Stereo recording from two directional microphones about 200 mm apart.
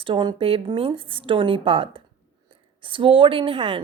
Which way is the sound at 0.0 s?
25° right (ahead or behind).